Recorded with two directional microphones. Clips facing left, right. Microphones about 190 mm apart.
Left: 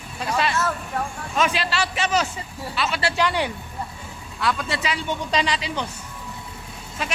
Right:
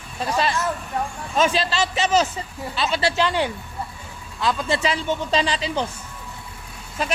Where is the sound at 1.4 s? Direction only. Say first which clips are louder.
Right 3 dB; 30° right (ahead or behind).